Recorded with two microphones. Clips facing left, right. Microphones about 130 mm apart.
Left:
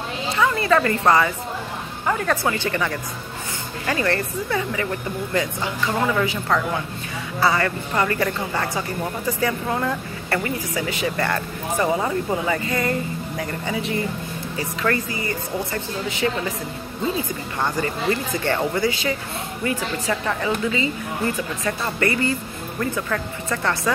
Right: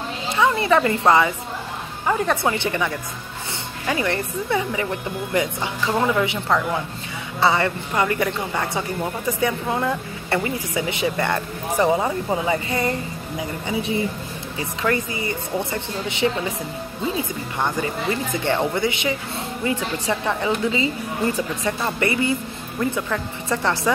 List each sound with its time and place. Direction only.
0.4 s a woman's voice: 20° right (ahead or behind)
3.8 s speech: 15° right (ahead or behind)
7.3 s speech: 25° right (ahead or behind)
17.6 s speech: 15° right (ahead or behind)